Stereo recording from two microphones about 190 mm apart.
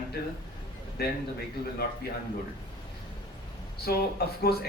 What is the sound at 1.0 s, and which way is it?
Speech, 55° left (ahead or behind).